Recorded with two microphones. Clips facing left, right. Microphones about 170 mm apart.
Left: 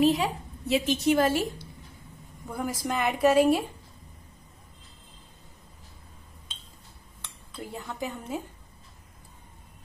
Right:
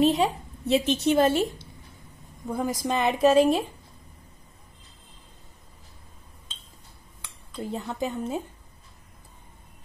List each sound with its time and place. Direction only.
0.0 s a woman's voice: 30° right (ahead or behind)
7.5 s a woman's voice: 20° right (ahead or behind)